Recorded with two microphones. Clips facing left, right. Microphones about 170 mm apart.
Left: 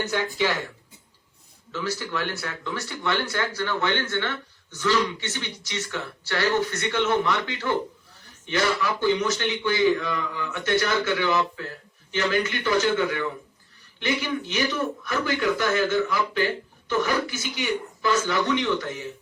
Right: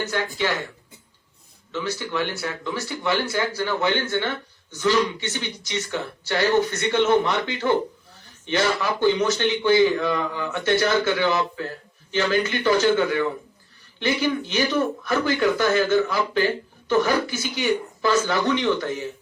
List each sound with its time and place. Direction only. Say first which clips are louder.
0.1 s speech: even; 10° left (ahead or behind)
1.7 s a man's voice: right 2 dB; 5° left (ahead or behind); by 18.7 s 35° right (ahead or behind)